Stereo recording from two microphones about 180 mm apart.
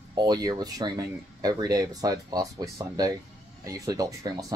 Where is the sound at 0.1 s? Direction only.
20° right (ahead or behind).